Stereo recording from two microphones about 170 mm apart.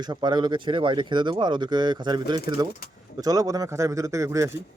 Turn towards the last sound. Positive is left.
turn(degrees=-15)  # may be behind; listen again after turning